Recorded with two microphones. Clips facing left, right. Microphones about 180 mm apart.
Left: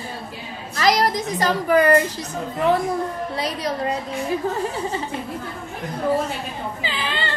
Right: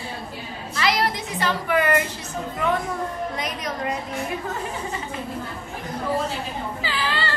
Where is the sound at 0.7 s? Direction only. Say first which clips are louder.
Left 4 dB; 40° left (ahead or behind).